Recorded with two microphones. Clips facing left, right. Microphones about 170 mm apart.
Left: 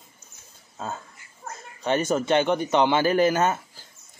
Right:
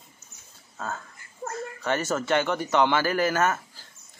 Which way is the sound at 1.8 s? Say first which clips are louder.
Left 4 dB; 20° left (ahead or behind).